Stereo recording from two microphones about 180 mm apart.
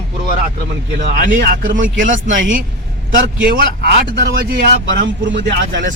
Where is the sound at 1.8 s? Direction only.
90° right.